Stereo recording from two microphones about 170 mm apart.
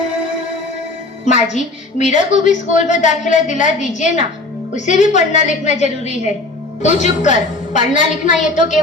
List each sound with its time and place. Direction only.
1.2 s a woman's voice: 45° left (ahead or behind)